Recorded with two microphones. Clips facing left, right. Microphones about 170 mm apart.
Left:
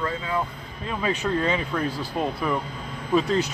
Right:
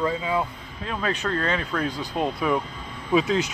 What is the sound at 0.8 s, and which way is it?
Speech, 5° left (ahead or behind).